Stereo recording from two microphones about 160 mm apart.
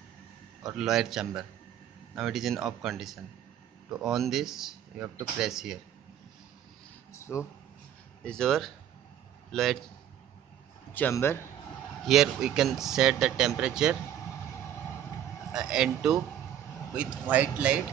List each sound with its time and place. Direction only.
0.7 s speech: 5° right (ahead or behind)
7.1 s speech: 20° left (ahead or behind)
8.2 s speech: 5° left (ahead or behind)
10.9 s speech: 15° left (ahead or behind)
12.1 s speech: 5° right (ahead or behind)
15.5 s speech: 5° right (ahead or behind)